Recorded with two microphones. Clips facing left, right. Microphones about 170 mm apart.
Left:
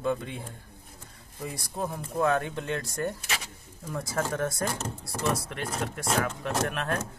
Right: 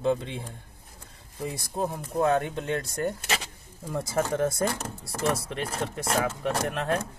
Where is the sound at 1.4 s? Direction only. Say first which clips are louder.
Right 3 dB; 25° right (ahead or behind).